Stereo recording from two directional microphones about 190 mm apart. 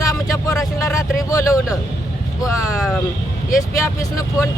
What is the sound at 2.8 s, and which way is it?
Speech, centre (ahead or behind).